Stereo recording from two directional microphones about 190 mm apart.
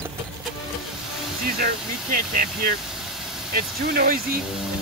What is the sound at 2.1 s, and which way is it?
Speech, 50° right (ahead or behind).